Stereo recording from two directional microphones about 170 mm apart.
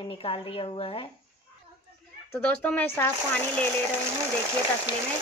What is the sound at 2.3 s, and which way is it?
Speech, 10° left (ahead or behind).